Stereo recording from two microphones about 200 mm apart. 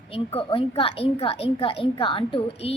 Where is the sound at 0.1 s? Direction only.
25° left (ahead or behind).